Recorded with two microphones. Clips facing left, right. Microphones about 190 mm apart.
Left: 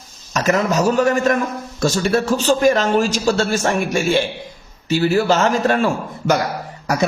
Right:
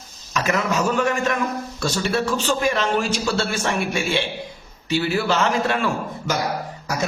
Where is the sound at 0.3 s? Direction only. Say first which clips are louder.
Left 5 dB; 40° left (ahead or behind).